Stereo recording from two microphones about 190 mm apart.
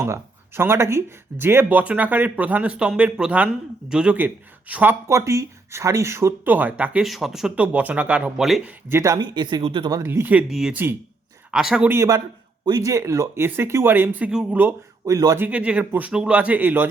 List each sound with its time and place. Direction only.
0.0 s speech: 10° right (ahead or behind)
8.9 s speech: 15° right (ahead or behind)
10.0 s speech: 10° right (ahead or behind)
15.4 s speech: 5° right (ahead or behind)